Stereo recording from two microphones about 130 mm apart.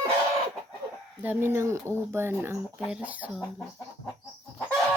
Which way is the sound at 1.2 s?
20° right (ahead or behind).